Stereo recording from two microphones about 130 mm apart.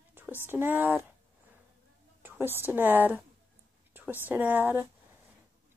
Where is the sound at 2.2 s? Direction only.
15° right (ahead or behind).